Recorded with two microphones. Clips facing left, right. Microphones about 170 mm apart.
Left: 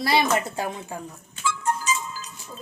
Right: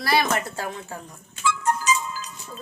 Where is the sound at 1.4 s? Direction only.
70° right (ahead or behind).